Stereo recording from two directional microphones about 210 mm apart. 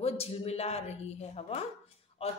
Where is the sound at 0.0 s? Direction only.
30° left (ahead or behind).